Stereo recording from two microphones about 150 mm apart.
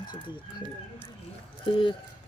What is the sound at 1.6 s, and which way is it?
Speech, 35° left (ahead or behind).